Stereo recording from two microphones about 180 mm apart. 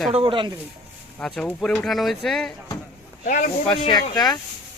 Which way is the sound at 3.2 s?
45° left (ahead or behind).